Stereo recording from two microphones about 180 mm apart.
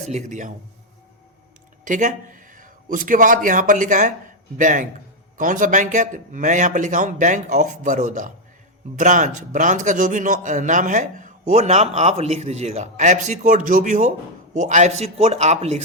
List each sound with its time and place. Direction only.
0.1 s speech: 40° right (ahead or behind)
1.8 s a man's voice: 45° right (ahead or behind)